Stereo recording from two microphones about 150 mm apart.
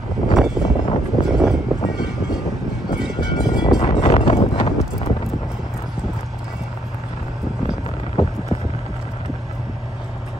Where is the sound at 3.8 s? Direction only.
45° left (ahead or behind).